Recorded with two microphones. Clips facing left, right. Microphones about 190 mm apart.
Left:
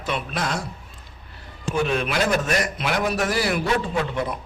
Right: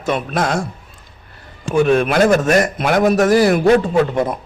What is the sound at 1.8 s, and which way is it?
A man's voice, 50° right (ahead or behind).